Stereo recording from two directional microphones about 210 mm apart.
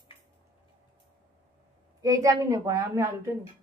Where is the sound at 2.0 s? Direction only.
15° right (ahead or behind).